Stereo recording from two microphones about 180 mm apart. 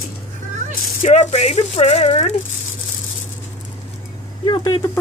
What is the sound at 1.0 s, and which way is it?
Speech, 40° left (ahead or behind).